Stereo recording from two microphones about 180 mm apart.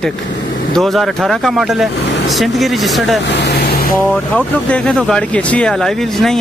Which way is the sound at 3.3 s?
70° left (ahead or behind).